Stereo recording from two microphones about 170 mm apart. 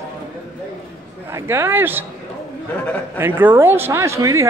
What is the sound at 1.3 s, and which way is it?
Speech, 15° right (ahead or behind).